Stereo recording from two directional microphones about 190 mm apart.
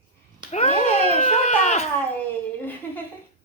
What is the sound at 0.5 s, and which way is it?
A child's voice, 35° left (ahead or behind).